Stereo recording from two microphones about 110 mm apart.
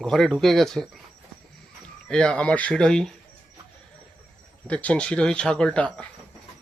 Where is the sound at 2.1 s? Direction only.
5° left (ahead or behind).